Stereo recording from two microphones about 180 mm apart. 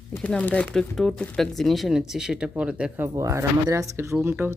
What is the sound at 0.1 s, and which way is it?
Speech, 5° left (ahead or behind).